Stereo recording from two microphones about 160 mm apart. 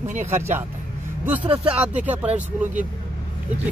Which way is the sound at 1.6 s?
5° right (ahead or behind).